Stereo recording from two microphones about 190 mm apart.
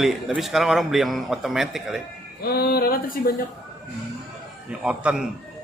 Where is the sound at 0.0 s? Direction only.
Centre (ahead or behind).